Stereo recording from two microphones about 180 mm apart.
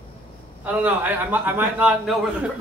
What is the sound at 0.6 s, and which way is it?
A man's voice, 10° right (ahead or behind).